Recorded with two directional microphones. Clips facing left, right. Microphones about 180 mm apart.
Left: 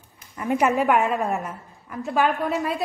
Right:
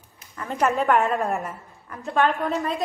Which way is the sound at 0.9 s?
Centre (ahead or behind).